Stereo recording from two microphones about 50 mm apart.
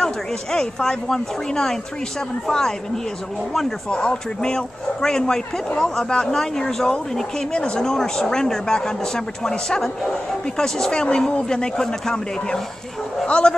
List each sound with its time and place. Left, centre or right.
0.0 s speech: centre
3.9 s a man's voice: centre